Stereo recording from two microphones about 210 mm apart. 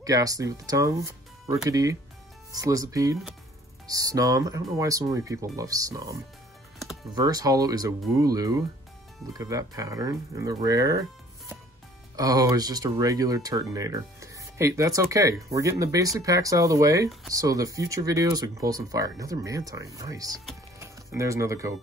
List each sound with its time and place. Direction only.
0.0 s speech: 15° right (ahead or behind)
7.2 s speech: 20° right (ahead or behind)